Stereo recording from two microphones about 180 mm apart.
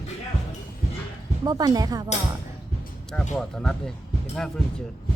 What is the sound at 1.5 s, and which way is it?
Speech, 20° right (ahead or behind).